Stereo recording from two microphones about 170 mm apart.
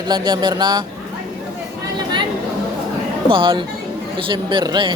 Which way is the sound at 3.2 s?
30° right (ahead or behind).